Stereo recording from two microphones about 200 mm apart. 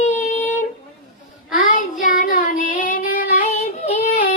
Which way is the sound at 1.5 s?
45° left (ahead or behind).